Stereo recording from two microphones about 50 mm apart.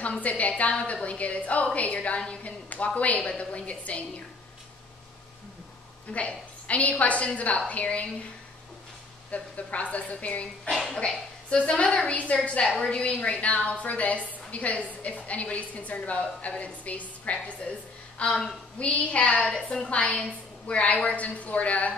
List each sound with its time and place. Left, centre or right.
0.2 s a woman's voice: left
6.1 s a woman's voice: left
9.3 s a woman's voice: left
12.6 s a woman's voice: centre
12.9 s a woman's voice: left